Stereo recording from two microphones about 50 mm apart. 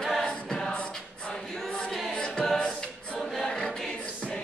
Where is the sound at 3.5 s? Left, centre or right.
Centre.